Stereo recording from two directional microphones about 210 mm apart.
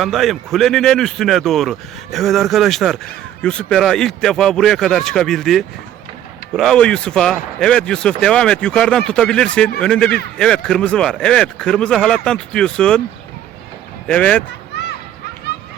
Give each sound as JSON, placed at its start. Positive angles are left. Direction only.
{"t": 0.0, "sound": "speech", "side_deg": 0}
{"t": 14.1, "sound": "speech", "side_deg": 5}